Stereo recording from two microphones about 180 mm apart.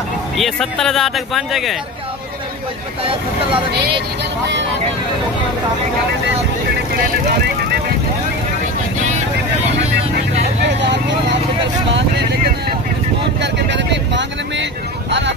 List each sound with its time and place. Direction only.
0.4 s speech: centre (ahead or behind)
10.6 s speech: 75° right (ahead or behind)
13.4 s speech: 75° right (ahead or behind)